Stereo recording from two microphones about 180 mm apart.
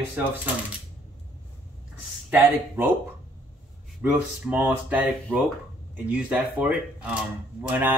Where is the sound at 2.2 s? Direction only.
10° right (ahead or behind).